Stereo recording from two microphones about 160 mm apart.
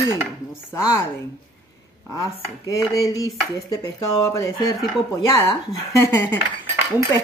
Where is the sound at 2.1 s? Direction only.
20° left (ahead or behind).